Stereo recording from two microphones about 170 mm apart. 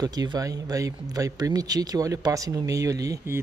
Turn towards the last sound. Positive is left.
turn(degrees=-20)  # may be behind; listen again after turning